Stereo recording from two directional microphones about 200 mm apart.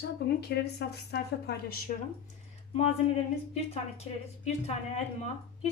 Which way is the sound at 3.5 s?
30° left (ahead or behind).